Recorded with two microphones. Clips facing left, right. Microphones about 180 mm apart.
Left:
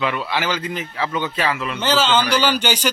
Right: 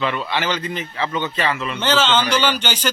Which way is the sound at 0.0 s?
10° left (ahead or behind).